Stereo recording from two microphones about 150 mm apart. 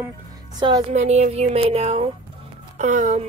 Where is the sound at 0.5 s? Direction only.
30° right (ahead or behind).